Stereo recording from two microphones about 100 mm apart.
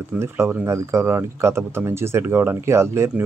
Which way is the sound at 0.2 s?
25° right (ahead or behind).